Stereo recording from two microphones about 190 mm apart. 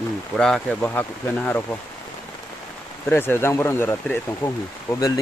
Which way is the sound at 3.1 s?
10° left (ahead or behind).